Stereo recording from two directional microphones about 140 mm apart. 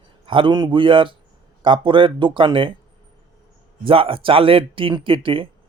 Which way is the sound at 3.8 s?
40° right (ahead or behind).